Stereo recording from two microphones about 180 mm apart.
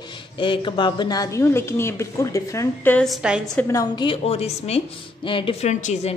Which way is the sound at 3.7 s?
20° left (ahead or behind).